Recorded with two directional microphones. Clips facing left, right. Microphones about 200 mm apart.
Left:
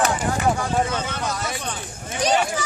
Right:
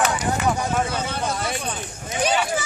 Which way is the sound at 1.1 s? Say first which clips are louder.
Right 2 dB; 30° right (ahead or behind).